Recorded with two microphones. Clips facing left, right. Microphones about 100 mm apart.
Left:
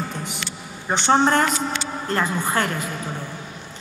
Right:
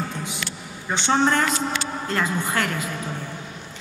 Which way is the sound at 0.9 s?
45° left (ahead or behind).